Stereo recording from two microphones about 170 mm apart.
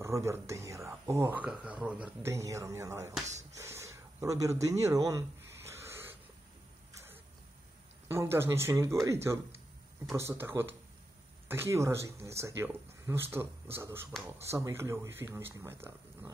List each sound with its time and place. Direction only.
0.0 s speech: 15° right (ahead or behind)
2.3 s speech: 15° right (ahead or behind)
3.3 s a sound: 15° right (ahead or behind)
8.1 s speech: 15° right (ahead or behind)